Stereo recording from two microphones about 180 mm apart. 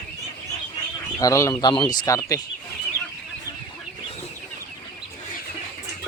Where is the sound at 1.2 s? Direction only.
15° left (ahead or behind).